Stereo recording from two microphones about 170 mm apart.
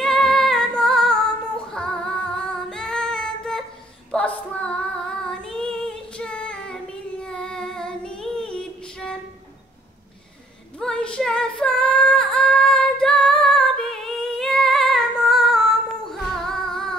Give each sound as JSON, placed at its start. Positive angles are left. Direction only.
{"t": 0.0, "sound": "female singing", "side_deg": 5}
{"t": 10.8, "sound": "female singing", "side_deg": 5}